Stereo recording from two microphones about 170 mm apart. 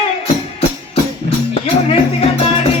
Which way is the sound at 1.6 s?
35° left (ahead or behind).